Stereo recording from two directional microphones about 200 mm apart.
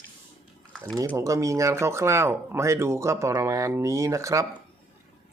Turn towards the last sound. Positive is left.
turn(degrees=-15)  # may be behind; listen again after turning